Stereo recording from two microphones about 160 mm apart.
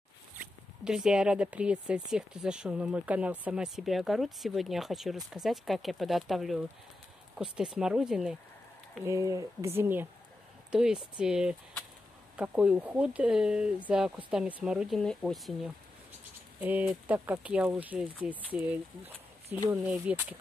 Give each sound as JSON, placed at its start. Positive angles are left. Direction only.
{"t": 0.8, "sound": "speech", "side_deg": -5}
{"t": 9.0, "sound": "speech", "side_deg": -20}
{"t": 16.5, "sound": "speech", "side_deg": -10}